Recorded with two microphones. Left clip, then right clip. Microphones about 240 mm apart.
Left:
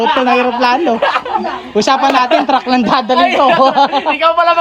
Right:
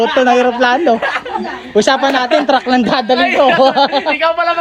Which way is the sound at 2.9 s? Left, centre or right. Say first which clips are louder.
Left 1 dB; left.